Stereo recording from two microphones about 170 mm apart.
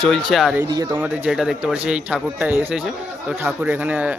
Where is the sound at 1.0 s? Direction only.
10° right (ahead or behind).